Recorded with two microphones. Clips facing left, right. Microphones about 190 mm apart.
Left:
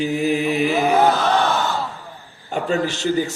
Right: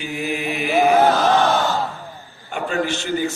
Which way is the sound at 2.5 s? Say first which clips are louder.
Left 1 dB; 40° left (ahead or behind).